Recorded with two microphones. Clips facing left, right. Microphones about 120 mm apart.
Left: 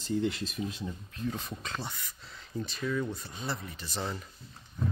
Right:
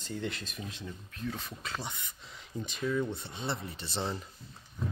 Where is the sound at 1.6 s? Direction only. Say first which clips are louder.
Left 1 dB; 10° right (ahead or behind).